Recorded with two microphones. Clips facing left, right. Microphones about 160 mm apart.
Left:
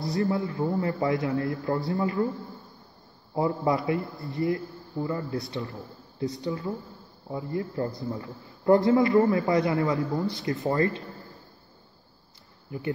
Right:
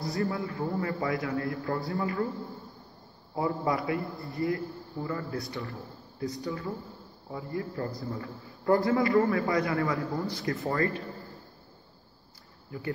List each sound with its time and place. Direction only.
0.0 s a man's voice: 20° left (ahead or behind)
3.3 s a man's voice: 25° left (ahead or behind)
12.7 s a man's voice: 20° left (ahead or behind)